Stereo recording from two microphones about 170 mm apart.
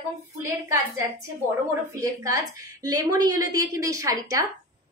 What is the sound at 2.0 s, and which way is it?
A woman's voice, 20° right (ahead or behind).